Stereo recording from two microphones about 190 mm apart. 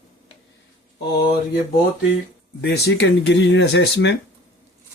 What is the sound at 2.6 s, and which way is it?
Speech, 60° left (ahead or behind).